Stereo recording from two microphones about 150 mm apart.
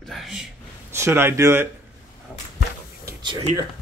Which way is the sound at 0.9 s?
15° right (ahead or behind).